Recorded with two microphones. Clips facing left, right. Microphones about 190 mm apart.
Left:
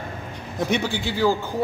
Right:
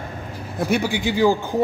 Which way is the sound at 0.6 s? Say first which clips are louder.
Right 3 dB; 10° right (ahead or behind).